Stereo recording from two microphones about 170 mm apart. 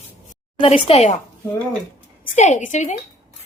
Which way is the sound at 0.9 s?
40° left (ahead or behind).